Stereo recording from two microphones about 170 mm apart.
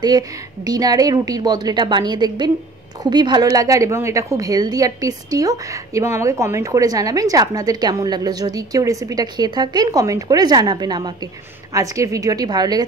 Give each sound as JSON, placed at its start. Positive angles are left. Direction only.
{"t": 0.7, "sound": "a woman's voice", "side_deg": -20}